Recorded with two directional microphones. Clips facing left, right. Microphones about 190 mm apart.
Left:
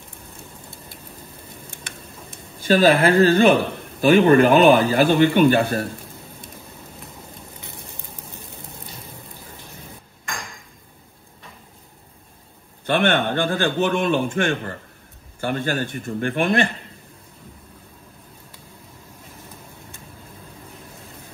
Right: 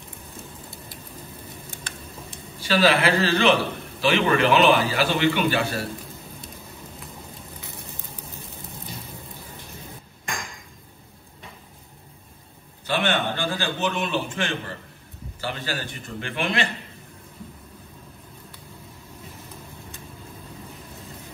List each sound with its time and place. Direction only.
2.6 s a man's voice: 50° left (ahead or behind)
12.8 s a man's voice: 55° left (ahead or behind)